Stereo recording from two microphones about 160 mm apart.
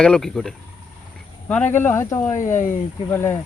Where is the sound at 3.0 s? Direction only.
15° left (ahead or behind).